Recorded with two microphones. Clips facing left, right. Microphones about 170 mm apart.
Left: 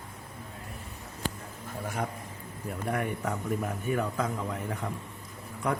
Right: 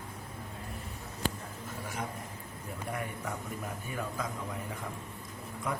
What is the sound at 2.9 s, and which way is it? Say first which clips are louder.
A man's voice: left 7 dB; 70° left (ahead or behind).